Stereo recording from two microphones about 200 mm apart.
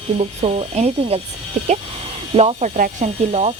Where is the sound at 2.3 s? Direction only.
35° right (ahead or behind).